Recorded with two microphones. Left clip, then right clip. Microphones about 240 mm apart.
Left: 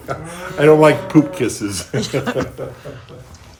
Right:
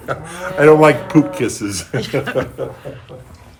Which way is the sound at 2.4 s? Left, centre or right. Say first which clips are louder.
Right 2 dB; centre.